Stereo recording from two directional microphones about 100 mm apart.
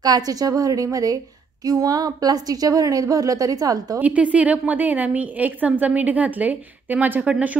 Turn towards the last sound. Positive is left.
turn(degrees=-10)  # may be behind; listen again after turning